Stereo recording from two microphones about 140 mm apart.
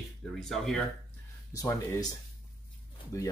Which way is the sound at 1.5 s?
20° left (ahead or behind).